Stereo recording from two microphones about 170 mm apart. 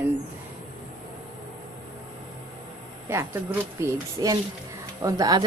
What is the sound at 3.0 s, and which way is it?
A woman's voice, 15° right (ahead or behind).